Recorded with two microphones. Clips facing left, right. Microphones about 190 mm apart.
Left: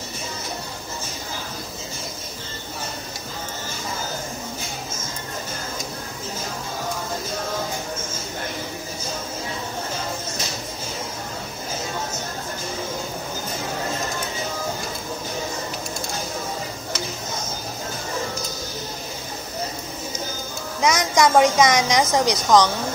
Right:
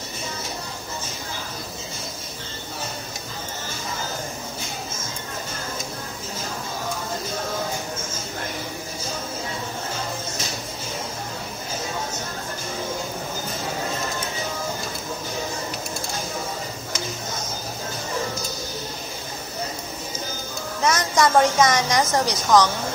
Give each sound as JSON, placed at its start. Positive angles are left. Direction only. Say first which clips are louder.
{"t": 20.8, "sound": "a woman's voice", "louder": "left 2 dB", "side_deg": 15}